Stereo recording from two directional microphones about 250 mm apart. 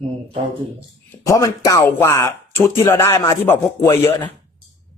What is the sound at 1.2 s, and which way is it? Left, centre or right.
Speech, centre.